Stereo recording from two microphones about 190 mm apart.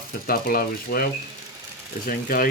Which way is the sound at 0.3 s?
50° left (ahead or behind).